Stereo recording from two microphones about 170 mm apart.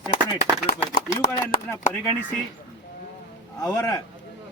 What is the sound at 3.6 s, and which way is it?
Speech, 20° left (ahead or behind).